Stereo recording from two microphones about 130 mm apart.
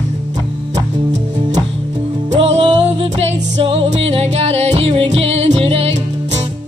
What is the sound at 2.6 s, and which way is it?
Music, 35° right (ahead or behind).